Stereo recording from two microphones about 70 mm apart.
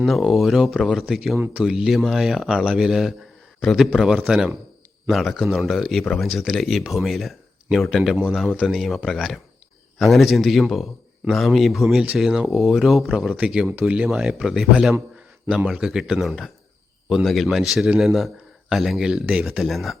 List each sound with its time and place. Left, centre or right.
0.0 s speech: centre
8.4 s speech: centre
8.7 s speech: centre
13.1 s speech: centre
14.1 s speech: centre